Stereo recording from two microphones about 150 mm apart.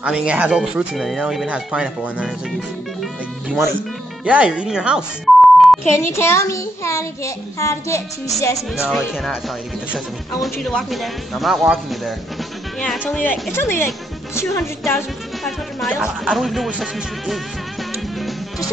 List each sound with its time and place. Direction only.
0.0 s speech: 5° right (ahead or behind)
3.0 s music: centre (ahead or behind)
4.2 s speech: 10° right (ahead or behind)
5.9 s a child's voice: 15° left (ahead or behind)
9.9 s speech: centre (ahead or behind)
13.2 s music: 15° left (ahead or behind)
15.4 s speech: centre (ahead or behind)